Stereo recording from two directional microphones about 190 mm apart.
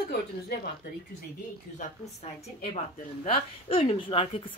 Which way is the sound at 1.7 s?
35° left (ahead or behind).